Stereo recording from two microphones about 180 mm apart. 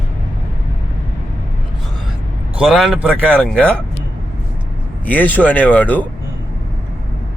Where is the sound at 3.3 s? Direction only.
5° left (ahead or behind).